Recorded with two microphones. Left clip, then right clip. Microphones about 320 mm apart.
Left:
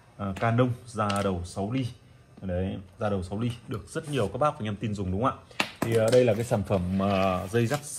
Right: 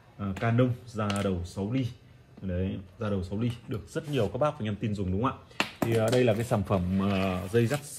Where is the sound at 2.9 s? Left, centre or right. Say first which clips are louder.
Left 4 dB; centre.